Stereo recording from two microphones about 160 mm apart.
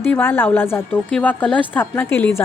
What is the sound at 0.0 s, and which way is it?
A woman's voice, 15° left (ahead or behind).